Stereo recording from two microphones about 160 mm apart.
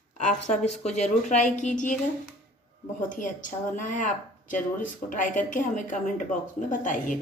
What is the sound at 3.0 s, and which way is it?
Speech, 55° left (ahead or behind).